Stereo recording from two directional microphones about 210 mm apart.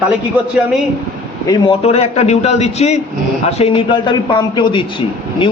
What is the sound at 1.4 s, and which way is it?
A man's voice, 20° left (ahead or behind).